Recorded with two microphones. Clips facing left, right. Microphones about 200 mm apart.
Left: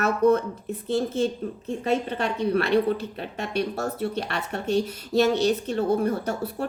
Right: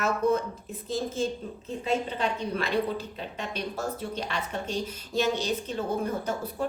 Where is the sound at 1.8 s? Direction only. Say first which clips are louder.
Left 3 dB; 65° left (ahead or behind).